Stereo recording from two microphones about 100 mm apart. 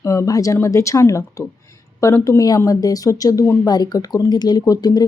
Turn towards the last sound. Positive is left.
turn(degrees=40)  # may be behind; listen again after turning